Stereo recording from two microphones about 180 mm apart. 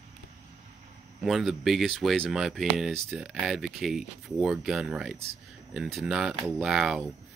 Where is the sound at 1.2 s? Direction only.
Centre (ahead or behind).